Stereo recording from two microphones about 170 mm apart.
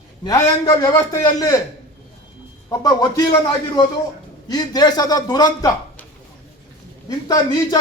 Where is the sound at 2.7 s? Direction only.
25° left (ahead or behind).